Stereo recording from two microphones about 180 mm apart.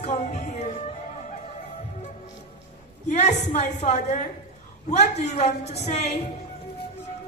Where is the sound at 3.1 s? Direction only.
40° left (ahead or behind).